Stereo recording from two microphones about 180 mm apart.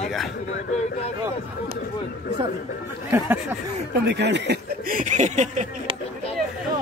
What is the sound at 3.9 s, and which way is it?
Speech, 70° right (ahead or behind).